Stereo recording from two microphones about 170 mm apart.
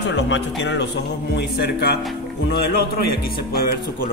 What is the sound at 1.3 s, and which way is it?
Speech, 70° left (ahead or behind).